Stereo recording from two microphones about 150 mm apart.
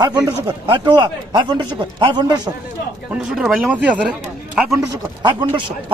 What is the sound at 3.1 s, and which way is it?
Speech, 5° right (ahead or behind).